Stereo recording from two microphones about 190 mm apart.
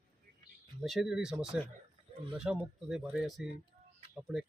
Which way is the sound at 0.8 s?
Centre (ahead or behind).